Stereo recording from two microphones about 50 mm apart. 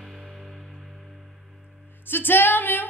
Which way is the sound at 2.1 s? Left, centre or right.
Left.